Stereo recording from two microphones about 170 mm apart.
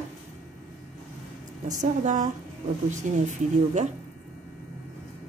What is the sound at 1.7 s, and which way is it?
A woman's voice, 45° right (ahead or behind).